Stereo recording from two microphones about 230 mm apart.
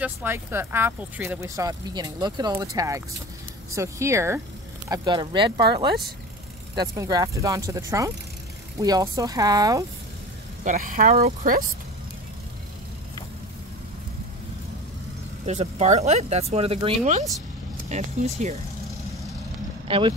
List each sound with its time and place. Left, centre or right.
0.0 s speech: centre
7.0 s speech: centre
10.6 s speech: right
15.4 s speech: right
19.9 s speech: right